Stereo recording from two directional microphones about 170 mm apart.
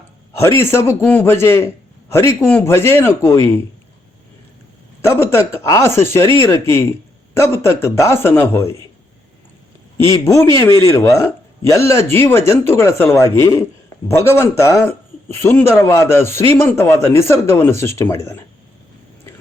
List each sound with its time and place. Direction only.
0.3 s a man's voice: 15° left (ahead or behind)
5.0 s a man's voice: 15° left (ahead or behind)
10.1 s a man's voice: 20° left (ahead or behind)